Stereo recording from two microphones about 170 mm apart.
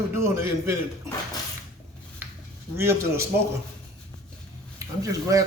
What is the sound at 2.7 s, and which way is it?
Speech, 15° right (ahead or behind).